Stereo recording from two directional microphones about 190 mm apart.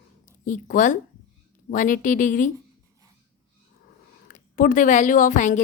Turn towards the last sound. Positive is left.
turn(degrees=40)  # may be behind; listen again after turning